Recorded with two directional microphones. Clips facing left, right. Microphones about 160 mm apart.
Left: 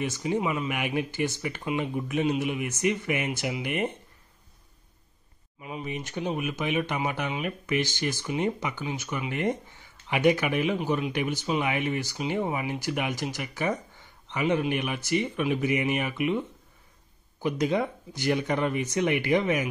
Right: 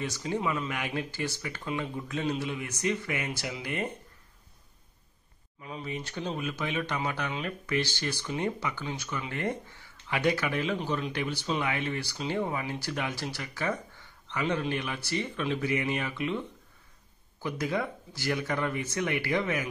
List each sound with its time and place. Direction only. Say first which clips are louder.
0.0 s speech: left 4 dB; 20° left (ahead or behind)
5.6 s speech: left 3 dB; 15° left (ahead or behind)